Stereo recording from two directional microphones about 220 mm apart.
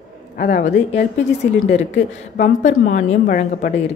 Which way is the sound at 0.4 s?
40° left (ahead or behind).